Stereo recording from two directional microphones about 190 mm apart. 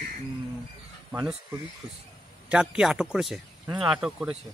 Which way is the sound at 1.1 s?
10° right (ahead or behind).